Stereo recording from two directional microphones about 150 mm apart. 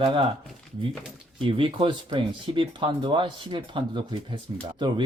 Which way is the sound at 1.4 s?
35° right (ahead or behind).